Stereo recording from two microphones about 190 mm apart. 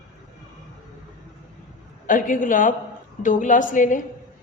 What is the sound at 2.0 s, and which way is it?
A woman's voice, 45° left (ahead or behind).